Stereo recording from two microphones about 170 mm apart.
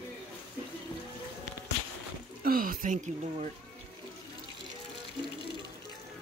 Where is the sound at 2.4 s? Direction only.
55° right (ahead or behind).